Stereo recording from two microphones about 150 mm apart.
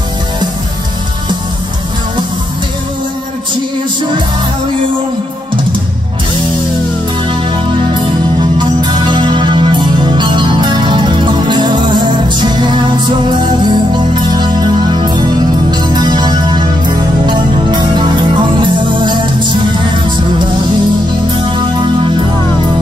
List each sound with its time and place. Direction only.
7.2 s music: 30° right (ahead or behind)
21.5 s music: 30° right (ahead or behind)